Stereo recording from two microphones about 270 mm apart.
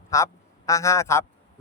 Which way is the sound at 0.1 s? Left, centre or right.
Centre.